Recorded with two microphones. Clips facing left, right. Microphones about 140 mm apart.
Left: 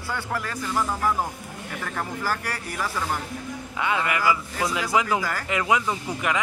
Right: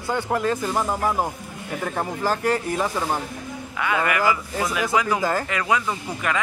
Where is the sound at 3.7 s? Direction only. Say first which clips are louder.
Right 2 dB; 25° left (ahead or behind).